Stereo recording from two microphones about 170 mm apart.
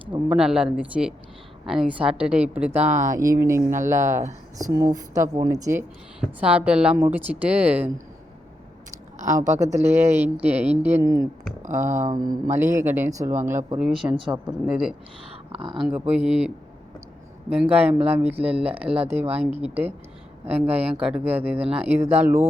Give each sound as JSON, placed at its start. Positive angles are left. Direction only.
{"t": 0.3, "sound": "a woman's voice", "side_deg": -5}
{"t": 2.9, "sound": "speech", "side_deg": -50}
{"t": 3.2, "sound": "a woman's voice", "side_deg": -20}
{"t": 6.1, "sound": "a woman's voice", "side_deg": -5}
{"t": 9.2, "sound": "speech", "side_deg": -45}
{"t": 9.8, "sound": "a woman's voice", "side_deg": -15}
{"t": 11.6, "sound": "speech", "side_deg": -45}
{"t": 12.1, "sound": "a woman's voice", "side_deg": -25}
{"t": 13.7, "sound": "speech", "side_deg": -5}
{"t": 15.5, "sound": "a woman's voice", "side_deg": -30}
{"t": 15.9, "sound": "a woman's voice", "side_deg": -5}
{"t": 17.5, "sound": "a woman's voice", "side_deg": -10}